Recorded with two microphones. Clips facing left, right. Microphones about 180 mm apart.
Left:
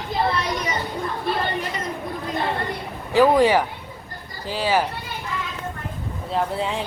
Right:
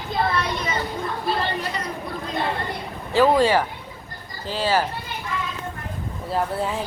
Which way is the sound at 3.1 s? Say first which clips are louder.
Left 1 dB; 15° left (ahead or behind).